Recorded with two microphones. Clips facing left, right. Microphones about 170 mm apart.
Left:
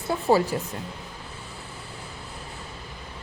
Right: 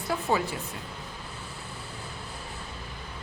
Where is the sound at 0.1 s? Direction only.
35° left (ahead or behind).